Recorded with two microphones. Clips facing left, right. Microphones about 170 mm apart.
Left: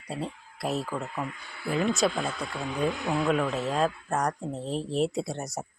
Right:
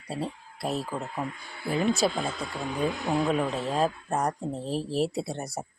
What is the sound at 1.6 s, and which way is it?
Speech, 30° right (ahead or behind).